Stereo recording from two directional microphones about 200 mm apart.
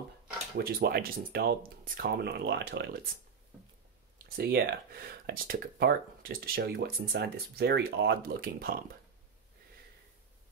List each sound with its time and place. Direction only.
0.6 s speech: 50° right (ahead or behind)
4.4 s speech: 50° right (ahead or behind)